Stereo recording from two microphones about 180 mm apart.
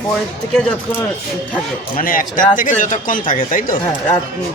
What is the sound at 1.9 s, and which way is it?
Speech, 50° left (ahead or behind).